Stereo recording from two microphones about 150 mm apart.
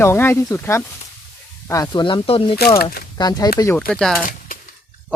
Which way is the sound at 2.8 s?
90° left.